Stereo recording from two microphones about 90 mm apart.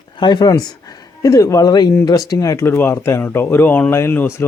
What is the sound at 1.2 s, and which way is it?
Speech, 40° left (ahead or behind).